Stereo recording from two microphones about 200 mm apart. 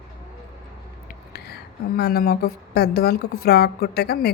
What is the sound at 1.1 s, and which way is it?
A woman's voice, 50° left (ahead or behind).